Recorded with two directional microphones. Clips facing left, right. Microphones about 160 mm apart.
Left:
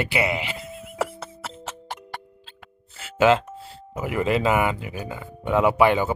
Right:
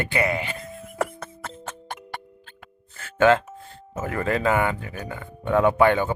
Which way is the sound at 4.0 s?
15° left (ahead or behind).